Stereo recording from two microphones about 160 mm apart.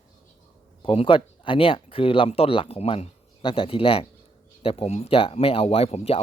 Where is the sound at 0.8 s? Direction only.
35° left (ahead or behind).